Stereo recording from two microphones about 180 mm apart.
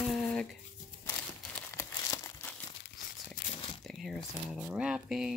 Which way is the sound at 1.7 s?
15° left (ahead or behind).